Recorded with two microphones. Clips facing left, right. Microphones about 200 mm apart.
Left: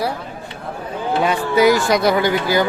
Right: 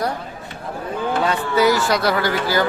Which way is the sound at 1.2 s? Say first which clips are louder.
Left 3 dB; 15° left (ahead or behind).